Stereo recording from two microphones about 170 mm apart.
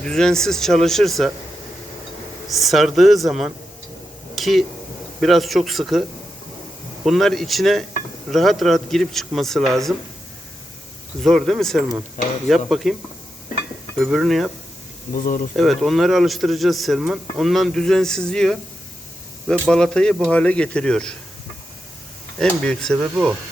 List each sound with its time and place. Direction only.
0.0 s speech: 5° left (ahead or behind)
2.5 s speech: centre (ahead or behind)
4.4 s a sound: centre (ahead or behind)
5.2 s speech: centre (ahead or behind)
11.2 s speech: centre (ahead or behind)
14.0 s speech: centre (ahead or behind)
15.1 s speech: 55° left (ahead or behind)
15.5 s speech: centre (ahead or behind)
19.6 s speech: 5° left (ahead or behind)
22.4 s speech: 5° left (ahead or behind)